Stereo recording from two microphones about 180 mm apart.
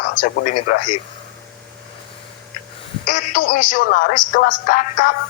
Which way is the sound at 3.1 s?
50° left (ahead or behind).